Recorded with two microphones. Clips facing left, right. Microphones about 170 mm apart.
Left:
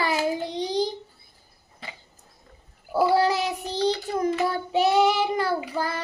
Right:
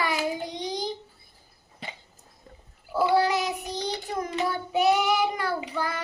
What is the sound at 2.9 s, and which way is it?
Speech, 35° left (ahead or behind).